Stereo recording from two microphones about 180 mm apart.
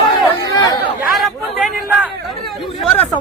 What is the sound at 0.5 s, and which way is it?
Chatter, 20° left (ahead or behind).